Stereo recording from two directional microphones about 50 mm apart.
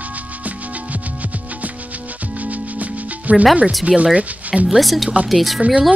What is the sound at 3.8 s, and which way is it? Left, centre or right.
Speech, right.